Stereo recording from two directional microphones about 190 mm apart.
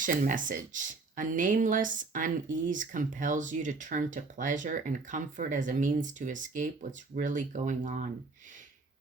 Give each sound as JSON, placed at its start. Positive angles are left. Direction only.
{"t": 0.0, "sound": "speech", "side_deg": -45}